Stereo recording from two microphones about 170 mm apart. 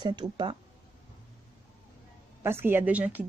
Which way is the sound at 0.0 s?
25° right (ahead or behind).